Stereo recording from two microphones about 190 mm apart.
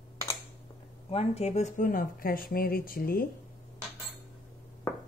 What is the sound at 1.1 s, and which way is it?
Speech, 35° left (ahead or behind).